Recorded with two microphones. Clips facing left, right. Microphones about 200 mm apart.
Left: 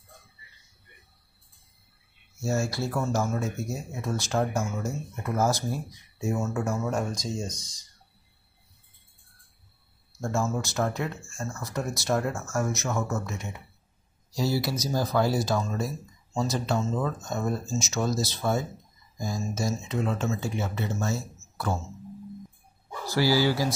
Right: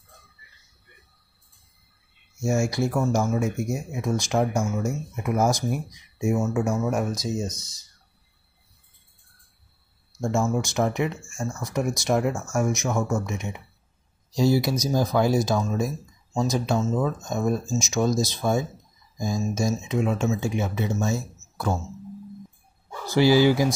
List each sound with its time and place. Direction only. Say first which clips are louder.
2.4 s speech: right 5 dB; 15° right (ahead or behind)
7.4 s speech: right 4 dB; 10° left (ahead or behind)
10.2 s speech: right 4 dB; 15° right (ahead or behind)
23.0 s speech: right 6 dB; 20° right (ahead or behind)